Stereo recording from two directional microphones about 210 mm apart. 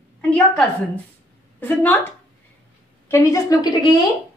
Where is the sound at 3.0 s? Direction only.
15° left (ahead or behind).